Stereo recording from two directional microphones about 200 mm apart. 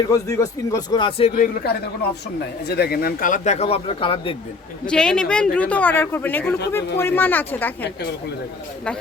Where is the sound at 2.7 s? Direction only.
50° left (ahead or behind); by 4.3 s 25° left (ahead or behind).